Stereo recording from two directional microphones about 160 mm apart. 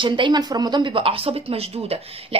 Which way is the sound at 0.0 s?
30° right (ahead or behind).